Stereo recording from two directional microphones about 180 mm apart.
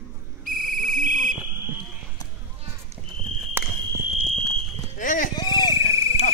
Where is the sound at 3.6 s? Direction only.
10° right (ahead or behind).